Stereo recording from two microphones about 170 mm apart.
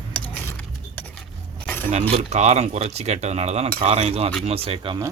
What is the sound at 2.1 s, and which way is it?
Speech, 40° right (ahead or behind).